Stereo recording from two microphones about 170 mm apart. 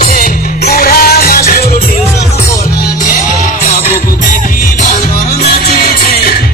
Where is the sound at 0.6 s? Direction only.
60° left (ahead or behind).